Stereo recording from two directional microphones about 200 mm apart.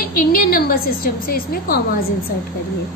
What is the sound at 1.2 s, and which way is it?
Speech, 45° left (ahead or behind).